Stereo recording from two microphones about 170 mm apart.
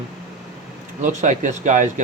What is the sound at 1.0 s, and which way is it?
Speech, 45° right (ahead or behind).